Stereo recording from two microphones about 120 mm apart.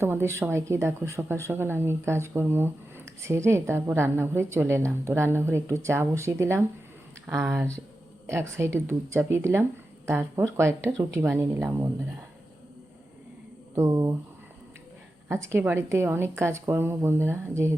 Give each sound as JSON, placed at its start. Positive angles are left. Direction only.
{"t": 0.0, "sound": "a woman's voice", "side_deg": -20}
{"t": 8.3, "sound": "a woman's voice", "side_deg": -20}
{"t": 13.7, "sound": "a woman's voice", "side_deg": -25}
{"t": 15.3, "sound": "a woman's voice", "side_deg": -25}